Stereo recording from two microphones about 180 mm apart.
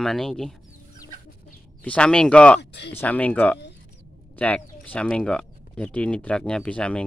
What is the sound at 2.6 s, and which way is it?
Speech, 70° left (ahead or behind).